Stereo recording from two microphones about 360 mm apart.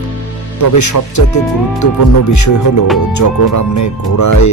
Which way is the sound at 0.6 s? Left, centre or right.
Left.